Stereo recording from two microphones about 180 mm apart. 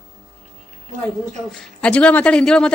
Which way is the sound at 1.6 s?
5° left (ahead or behind).